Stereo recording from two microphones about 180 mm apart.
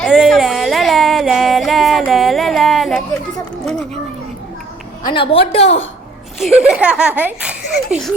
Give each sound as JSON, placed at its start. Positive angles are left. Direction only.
{"t": 0.0, "sound": "music", "side_deg": 0}
{"t": 5.0, "sound": "a woman's voice", "side_deg": 30}
{"t": 6.6, "sound": "speech", "side_deg": -5}